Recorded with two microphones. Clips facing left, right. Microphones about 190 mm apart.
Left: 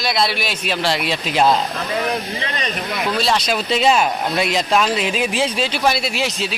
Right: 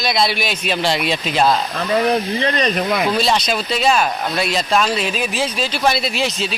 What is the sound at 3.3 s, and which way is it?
Speech, 5° left (ahead or behind).